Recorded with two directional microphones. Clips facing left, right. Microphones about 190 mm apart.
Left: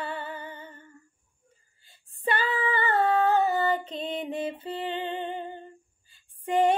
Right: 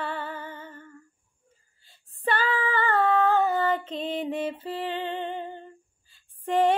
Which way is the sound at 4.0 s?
Centre (ahead or behind).